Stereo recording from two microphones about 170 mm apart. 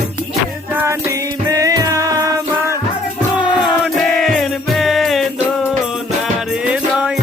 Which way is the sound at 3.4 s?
5° right (ahead or behind).